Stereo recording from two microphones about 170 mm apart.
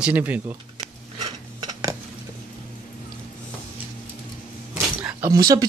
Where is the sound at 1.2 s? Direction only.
25° right (ahead or behind).